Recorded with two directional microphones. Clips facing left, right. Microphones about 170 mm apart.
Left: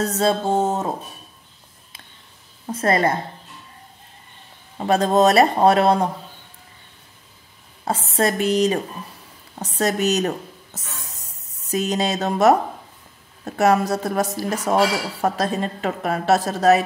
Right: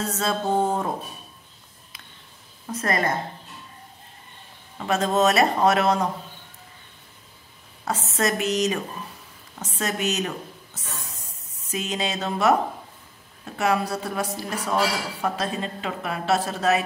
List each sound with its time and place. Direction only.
0.0 s music: 35° left (ahead or behind)
2.6 s a woman's voice: 30° left (ahead or behind)
4.7 s a woman's voice: 35° left (ahead or behind)
7.8 s a woman's voice: 30° left (ahead or behind)
13.6 s a woman's voice: 40° left (ahead or behind)